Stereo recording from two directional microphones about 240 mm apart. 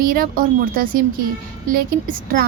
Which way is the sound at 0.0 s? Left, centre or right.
Right.